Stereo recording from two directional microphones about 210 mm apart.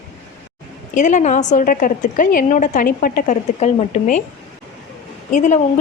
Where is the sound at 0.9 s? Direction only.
35° left (ahead or behind).